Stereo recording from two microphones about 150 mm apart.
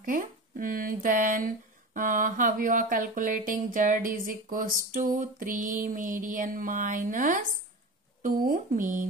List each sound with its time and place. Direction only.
0.0 s speech: 65° right (ahead or behind)